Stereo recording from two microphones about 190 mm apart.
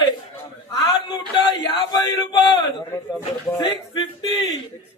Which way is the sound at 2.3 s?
25° left (ahead or behind).